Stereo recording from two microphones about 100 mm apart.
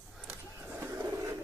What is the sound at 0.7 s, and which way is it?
Wild animals, 25° right (ahead or behind).